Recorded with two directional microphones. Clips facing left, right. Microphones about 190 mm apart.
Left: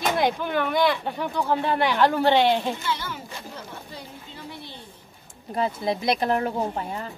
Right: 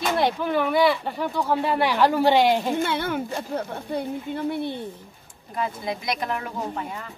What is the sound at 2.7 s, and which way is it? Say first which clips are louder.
A woman's voice: right 6 dB; 55° right (ahead or behind).